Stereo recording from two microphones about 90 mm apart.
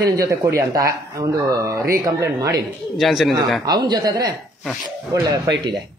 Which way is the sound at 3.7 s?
45° right (ahead or behind).